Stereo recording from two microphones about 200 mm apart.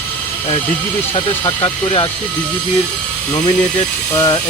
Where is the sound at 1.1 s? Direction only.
25° left (ahead or behind).